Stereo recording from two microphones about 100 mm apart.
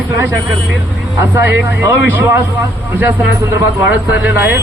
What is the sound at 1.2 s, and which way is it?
A man's voice, 20° right (ahead or behind).